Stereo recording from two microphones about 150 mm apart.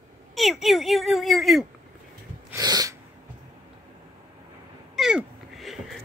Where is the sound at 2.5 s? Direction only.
25° right (ahead or behind).